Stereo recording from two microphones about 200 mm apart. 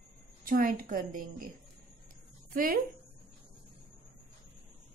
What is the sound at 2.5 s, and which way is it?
Speech, 45° right (ahead or behind).